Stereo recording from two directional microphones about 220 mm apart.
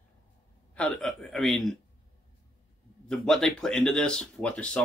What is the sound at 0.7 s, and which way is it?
Speech, 5° left (ahead or behind).